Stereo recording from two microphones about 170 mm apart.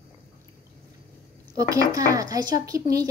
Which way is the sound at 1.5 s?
20° right (ahead or behind).